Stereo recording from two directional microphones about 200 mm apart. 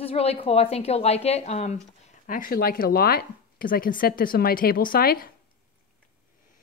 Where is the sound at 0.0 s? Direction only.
30° left (ahead or behind); by 5.3 s 45° left (ahead or behind).